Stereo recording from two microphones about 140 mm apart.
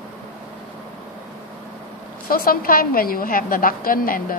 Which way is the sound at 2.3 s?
90° left.